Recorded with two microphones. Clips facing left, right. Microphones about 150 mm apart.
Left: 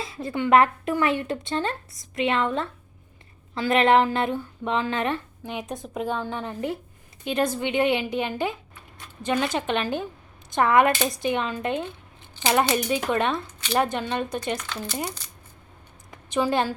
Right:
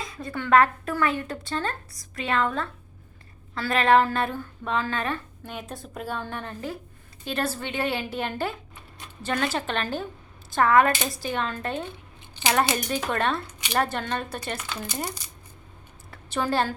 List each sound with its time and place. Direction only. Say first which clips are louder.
0.0 s a woman's voice: left 5 dB; 25° left (ahead or behind)
12.2 s a sound: left 2 dB; 15° right (ahead or behind)
12.7 s speech: left 4 dB; 15° left (ahead or behind)
14.6 s speech: left 1 dB; 10° right (ahead or behind)
16.1 s a woman's voice: left 2 dB; 15° left (ahead or behind)